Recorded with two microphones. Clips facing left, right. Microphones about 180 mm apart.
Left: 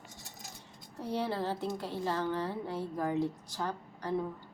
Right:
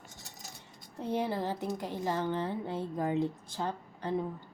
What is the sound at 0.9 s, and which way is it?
A woman's voice, 20° right (ahead or behind).